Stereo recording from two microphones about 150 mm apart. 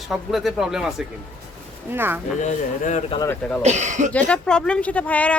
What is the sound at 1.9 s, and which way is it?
Speech, 15° right (ahead or behind).